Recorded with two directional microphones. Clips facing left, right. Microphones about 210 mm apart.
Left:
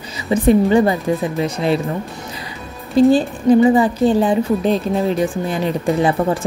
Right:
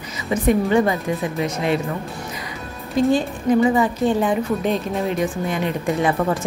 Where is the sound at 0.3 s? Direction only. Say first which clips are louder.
Left 5 dB; 30° left (ahead or behind).